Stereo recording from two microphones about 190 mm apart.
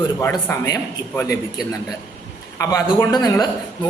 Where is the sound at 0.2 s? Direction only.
15° left (ahead or behind).